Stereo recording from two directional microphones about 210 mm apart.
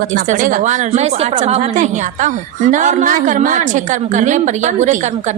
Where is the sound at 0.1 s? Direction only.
40° right (ahead or behind).